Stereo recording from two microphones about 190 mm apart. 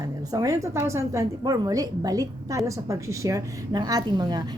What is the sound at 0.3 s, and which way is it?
A woman's voice, 15° right (ahead or behind).